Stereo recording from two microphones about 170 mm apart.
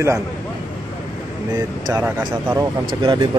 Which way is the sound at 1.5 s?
25° right (ahead or behind).